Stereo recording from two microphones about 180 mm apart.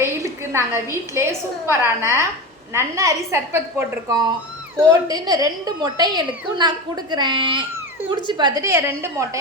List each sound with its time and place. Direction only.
0.0 s a woman's voice: 15° right (ahead or behind)